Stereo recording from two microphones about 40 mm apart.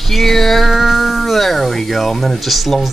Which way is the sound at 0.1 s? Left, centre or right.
Centre.